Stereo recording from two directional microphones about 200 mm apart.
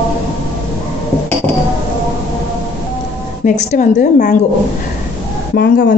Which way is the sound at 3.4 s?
35° left (ahead or behind).